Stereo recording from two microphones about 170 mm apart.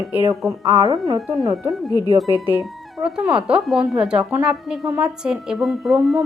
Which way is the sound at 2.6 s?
5° right (ahead or behind).